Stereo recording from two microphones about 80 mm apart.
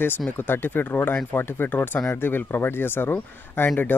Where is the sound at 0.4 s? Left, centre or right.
Left.